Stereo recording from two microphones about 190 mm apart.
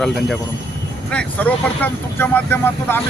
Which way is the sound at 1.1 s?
5° left (ahead or behind).